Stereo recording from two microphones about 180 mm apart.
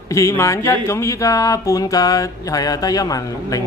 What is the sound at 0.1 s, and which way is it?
Speech, 15° left (ahead or behind).